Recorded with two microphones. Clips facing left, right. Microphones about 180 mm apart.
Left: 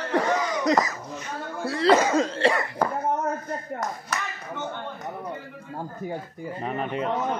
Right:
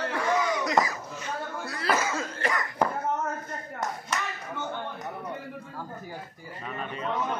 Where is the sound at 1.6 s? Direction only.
30° left (ahead or behind).